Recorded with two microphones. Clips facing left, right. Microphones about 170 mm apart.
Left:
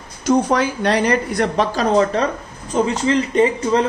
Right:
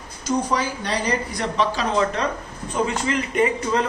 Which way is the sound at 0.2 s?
60° left (ahead or behind).